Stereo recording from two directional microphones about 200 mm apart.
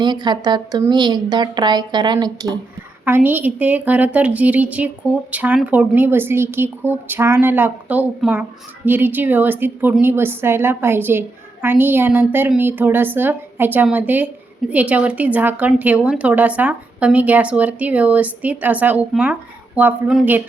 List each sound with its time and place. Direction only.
0.0 s a woman's voice: 20° right (ahead or behind)
3.0 s a woman's voice: 10° right (ahead or behind)